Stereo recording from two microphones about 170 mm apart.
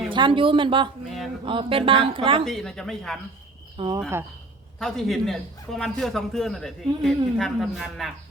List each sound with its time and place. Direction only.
0.1 s speech: 30° right (ahead or behind)
2.4 s a man's voice: centre (ahead or behind)
3.8 s speech: 25° right (ahead or behind)
4.8 s a man's voice: centre (ahead or behind)